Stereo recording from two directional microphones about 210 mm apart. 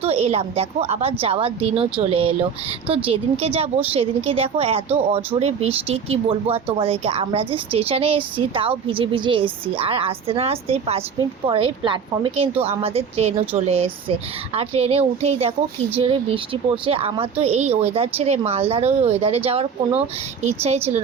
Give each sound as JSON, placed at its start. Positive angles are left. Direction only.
{"t": 0.0, "sound": "a woman's voice", "side_deg": -30}
{"t": 20.7, "sound": "a woman's voice", "side_deg": -30}